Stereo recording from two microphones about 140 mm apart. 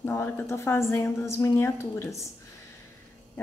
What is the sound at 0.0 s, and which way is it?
A woman's voice, 15° left (ahead or behind).